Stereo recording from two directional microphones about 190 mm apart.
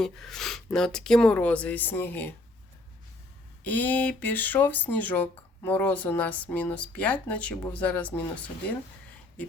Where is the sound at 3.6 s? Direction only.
10° left (ahead or behind).